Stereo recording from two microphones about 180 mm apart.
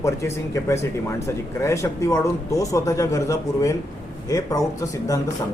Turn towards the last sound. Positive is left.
turn(degrees=20)  # may be behind; listen again after turning